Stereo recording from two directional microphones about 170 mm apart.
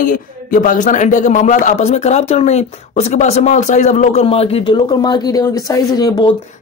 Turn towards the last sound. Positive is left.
turn(degrees=25)  # may be behind; listen again after turning